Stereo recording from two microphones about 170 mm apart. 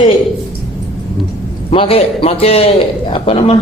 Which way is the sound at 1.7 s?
30° left (ahead or behind).